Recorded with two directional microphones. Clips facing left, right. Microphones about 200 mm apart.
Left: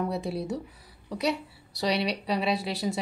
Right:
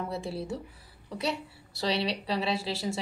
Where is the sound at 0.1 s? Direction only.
20° left (ahead or behind).